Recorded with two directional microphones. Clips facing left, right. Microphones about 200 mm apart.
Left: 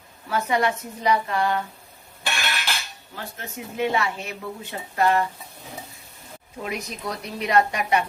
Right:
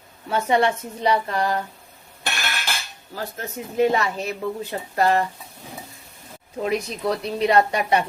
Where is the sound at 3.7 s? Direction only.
40° right (ahead or behind).